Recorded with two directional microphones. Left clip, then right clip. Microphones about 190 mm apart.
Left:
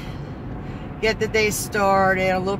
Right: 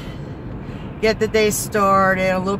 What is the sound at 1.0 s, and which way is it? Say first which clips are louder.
Speech: right 3 dB; 15° right (ahead or behind).